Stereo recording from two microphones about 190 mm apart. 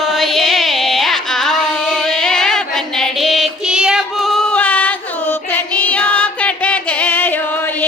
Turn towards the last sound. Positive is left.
turn(degrees=10)  # may be behind; listen again after turning